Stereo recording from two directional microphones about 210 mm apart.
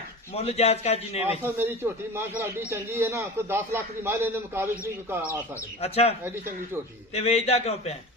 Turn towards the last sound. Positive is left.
turn(degrees=30)  # may be behind; listen again after turning